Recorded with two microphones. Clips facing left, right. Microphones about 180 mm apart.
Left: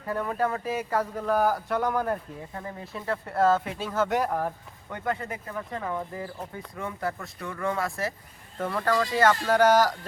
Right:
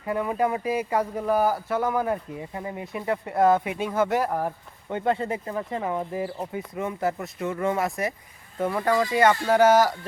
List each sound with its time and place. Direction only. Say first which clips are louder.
0.0 s speech: right 3 dB; 10° right (ahead or behind)
4.9 s speech: right 6 dB; 25° right (ahead or behind); by 10.1 s 10° right (ahead or behind)